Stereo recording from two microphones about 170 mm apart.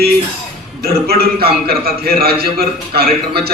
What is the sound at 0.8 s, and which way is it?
A man's voice, 65° right (ahead or behind).